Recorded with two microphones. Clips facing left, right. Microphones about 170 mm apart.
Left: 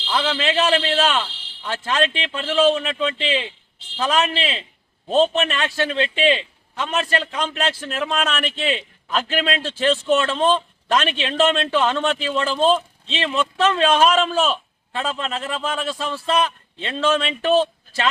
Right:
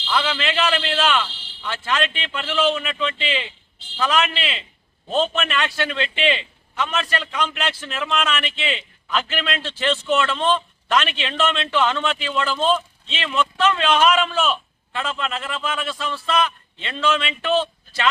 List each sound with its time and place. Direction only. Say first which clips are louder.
0.1 s a man's voice: left 2 dB; 35° left (ahead or behind)